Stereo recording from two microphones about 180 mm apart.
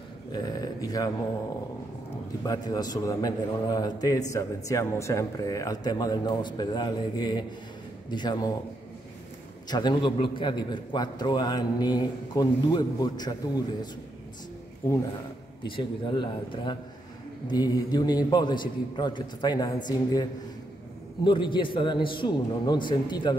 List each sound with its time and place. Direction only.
0.3 s a sound: 20° left (ahead or behind)
2.4 s a man's voice: 20° left (ahead or behind)
9.7 s a man's voice: 25° left (ahead or behind)
15.6 s a man's voice: 25° left (ahead or behind)